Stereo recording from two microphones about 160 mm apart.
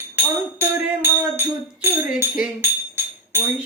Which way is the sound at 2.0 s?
10° right (ahead or behind).